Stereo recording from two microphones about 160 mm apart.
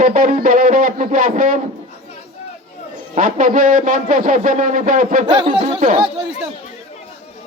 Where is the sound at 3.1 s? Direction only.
55° right (ahead or behind).